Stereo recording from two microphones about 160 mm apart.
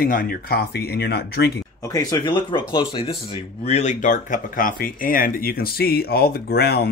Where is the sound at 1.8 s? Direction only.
20° left (ahead or behind).